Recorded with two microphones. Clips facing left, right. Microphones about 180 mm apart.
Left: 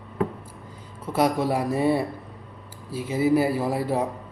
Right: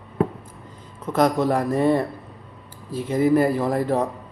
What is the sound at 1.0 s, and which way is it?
Speech, 10° left (ahead or behind).